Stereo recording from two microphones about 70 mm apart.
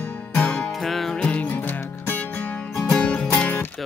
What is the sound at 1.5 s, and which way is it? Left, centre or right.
Music, left.